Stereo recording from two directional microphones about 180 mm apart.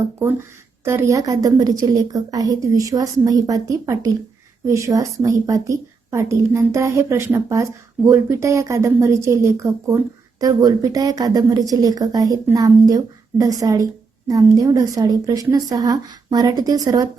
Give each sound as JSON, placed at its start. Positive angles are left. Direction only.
{"t": 0.2, "sound": "a woman's voice", "side_deg": -15}